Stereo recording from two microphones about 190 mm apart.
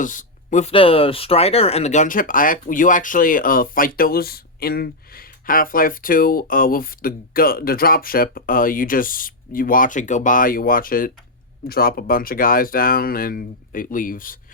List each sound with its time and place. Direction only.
0.0 s speech: 45° left (ahead or behind)
0.7 s speech: 30° left (ahead or behind); by 14.3 s 45° left (ahead or behind)